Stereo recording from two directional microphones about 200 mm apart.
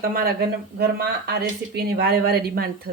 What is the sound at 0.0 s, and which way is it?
Speech, 45° right (ahead or behind).